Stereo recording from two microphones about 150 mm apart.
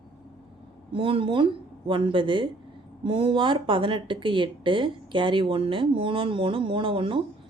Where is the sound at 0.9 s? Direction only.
35° right (ahead or behind).